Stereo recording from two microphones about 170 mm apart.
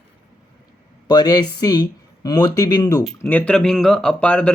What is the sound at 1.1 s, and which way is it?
Speech, 25° left (ahead or behind).